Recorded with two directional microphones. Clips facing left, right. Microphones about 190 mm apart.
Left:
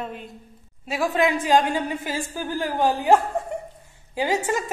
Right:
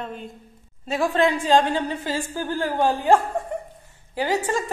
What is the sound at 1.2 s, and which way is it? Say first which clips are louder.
A woman's voice: right 1 dB; 15° left (ahead or behind).